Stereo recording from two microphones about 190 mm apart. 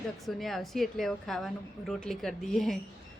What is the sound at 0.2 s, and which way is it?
A woman's voice, centre (ahead or behind).